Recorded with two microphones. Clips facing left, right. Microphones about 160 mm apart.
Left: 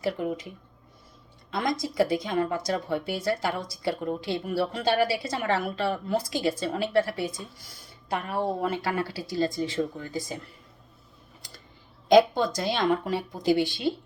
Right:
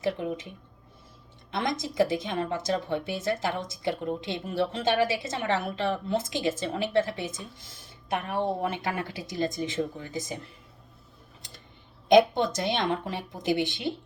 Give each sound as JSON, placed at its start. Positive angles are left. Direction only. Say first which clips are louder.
{"t": 0.0, "sound": "speech", "louder": "even", "side_deg": -25}
{"t": 1.5, "sound": "speech", "louder": "left 2 dB", "side_deg": -25}
{"t": 12.0, "sound": "speech", "louder": "left 1 dB", "side_deg": -20}